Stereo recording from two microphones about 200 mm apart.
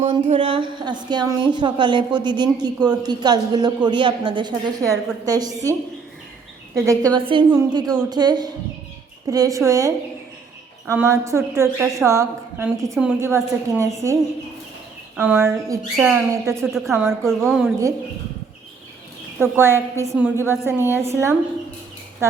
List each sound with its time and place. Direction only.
0.0 s speech: 30° right (ahead or behind)
6.7 s a woman's voice: 15° right (ahead or behind)
16.6 s a woman's voice: centre (ahead or behind)
19.4 s a woman's voice: 10° right (ahead or behind)